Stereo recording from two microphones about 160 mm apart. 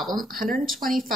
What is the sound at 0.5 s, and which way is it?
Speech, centre (ahead or behind).